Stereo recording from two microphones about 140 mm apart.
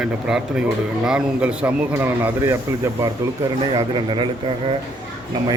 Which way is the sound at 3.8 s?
35° right (ahead or behind).